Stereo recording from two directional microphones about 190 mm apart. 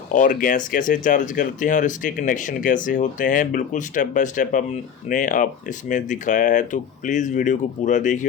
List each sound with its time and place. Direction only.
0.1 s speech: 45° left (ahead or behind)